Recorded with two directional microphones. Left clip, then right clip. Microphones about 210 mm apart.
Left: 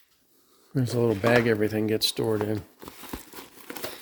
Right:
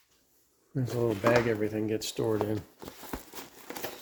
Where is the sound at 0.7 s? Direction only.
55° left (ahead or behind); by 2.4 s 35° left (ahead or behind).